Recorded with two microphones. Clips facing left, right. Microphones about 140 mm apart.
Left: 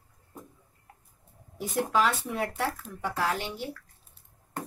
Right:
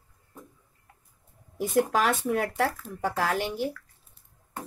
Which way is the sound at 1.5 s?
50° right (ahead or behind).